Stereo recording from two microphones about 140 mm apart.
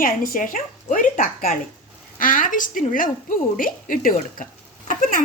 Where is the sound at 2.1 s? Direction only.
75° left (ahead or behind).